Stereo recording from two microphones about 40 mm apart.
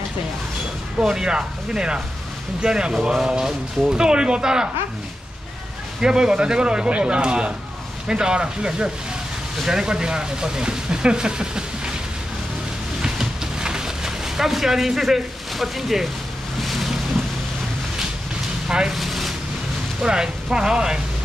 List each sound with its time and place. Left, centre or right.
1.0 s speech: centre
5.9 s speech: centre
13.0 s a sound: centre
16.6 s boat: centre
18.9 s a sound: centre
20.0 s speech: centre